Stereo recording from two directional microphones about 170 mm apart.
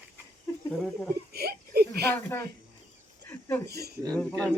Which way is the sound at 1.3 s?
65° right (ahead or behind).